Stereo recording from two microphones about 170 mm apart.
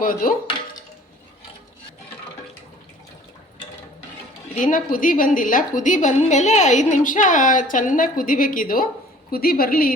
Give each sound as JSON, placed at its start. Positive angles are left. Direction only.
{"t": 0.0, "sound": "a woman's voice", "side_deg": 55}
{"t": 4.5, "sound": "a woman's voice", "side_deg": 50}